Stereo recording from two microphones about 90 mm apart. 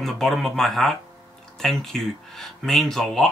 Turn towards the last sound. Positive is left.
turn(degrees=5)  # may be behind; listen again after turning